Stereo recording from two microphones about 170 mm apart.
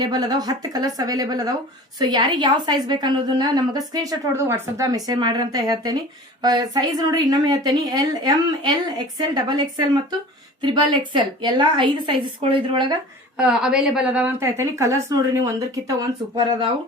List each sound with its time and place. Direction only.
0.0 s a woman's voice: 25° right (ahead or behind)
13.3 s a woman's voice: 5° right (ahead or behind); by 16.6 s 25° right (ahead or behind)